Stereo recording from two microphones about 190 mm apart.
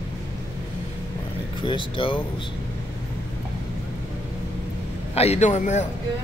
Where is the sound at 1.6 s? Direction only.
25° left (ahead or behind).